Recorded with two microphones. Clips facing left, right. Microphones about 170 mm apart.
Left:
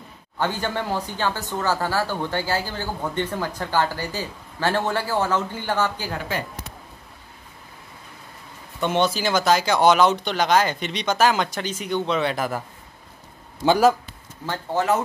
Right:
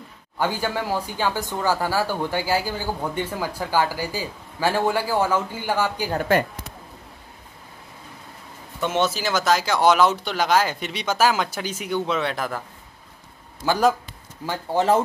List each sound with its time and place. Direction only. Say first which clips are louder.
0.4 s speech: right 1 dB; 10° right (ahead or behind)
6.1 s speech: right 8 dB; 55° right (ahead or behind)
8.8 s speech: left 1 dB; 5° right (ahead or behind)
14.4 s speech: right 2 dB; 10° right (ahead or behind)